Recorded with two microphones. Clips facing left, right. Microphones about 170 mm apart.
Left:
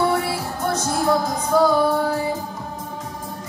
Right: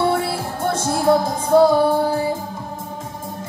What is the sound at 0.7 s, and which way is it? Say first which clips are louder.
Music: right 4 dB; 25° right (ahead or behind).